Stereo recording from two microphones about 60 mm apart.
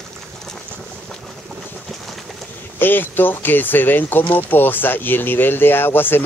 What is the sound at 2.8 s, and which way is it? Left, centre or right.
Speech, left.